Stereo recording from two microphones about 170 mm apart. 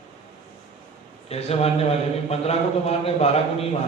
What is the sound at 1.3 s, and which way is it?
A man's voice, 35° left (ahead or behind).